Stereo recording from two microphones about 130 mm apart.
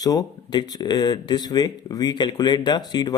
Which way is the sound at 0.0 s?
30° left (ahead or behind).